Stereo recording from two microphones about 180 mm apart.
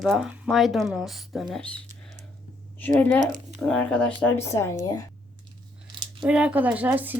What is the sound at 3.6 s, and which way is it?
Speech, 5° left (ahead or behind).